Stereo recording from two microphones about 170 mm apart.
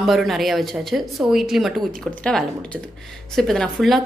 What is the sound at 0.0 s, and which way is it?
A woman's voice, centre (ahead or behind).